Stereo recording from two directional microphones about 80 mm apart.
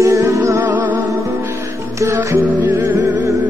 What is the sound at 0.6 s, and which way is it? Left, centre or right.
Music, right.